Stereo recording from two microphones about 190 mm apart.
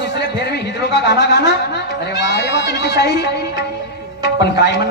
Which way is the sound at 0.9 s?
65° left (ahead or behind).